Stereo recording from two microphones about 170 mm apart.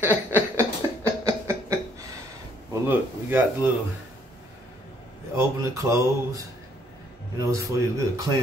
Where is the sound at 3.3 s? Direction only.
10° right (ahead or behind).